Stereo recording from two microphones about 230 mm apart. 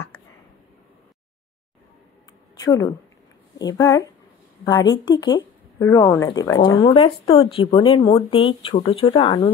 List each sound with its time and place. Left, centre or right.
2.6 s speech: centre